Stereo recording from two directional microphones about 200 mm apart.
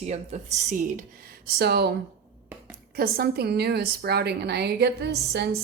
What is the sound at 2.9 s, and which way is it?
Speech, 50° right (ahead or behind).